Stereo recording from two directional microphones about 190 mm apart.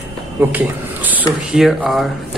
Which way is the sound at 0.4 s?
10° right (ahead or behind).